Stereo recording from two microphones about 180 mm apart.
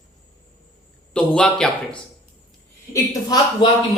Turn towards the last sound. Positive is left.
turn(degrees=20)  # may be behind; listen again after turning